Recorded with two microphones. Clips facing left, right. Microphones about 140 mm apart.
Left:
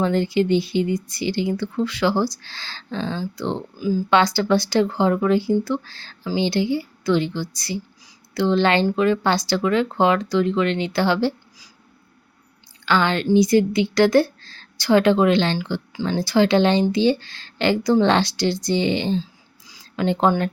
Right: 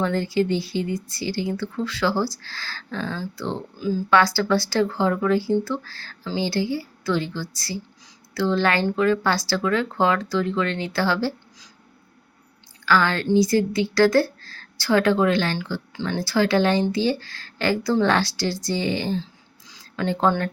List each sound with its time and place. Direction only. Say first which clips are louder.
0.0 s speech: left 3 dB; 20° left (ahead or behind)
4.1 s a woman's voice: left 1 dB; 20° left (ahead or behind)
12.8 s a woman's voice: left 1 dB; 20° left (ahead or behind)
19.6 s a sound: left 3 dB; 15° left (ahead or behind)